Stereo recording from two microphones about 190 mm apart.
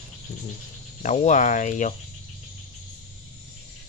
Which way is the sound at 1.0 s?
40° left (ahead or behind).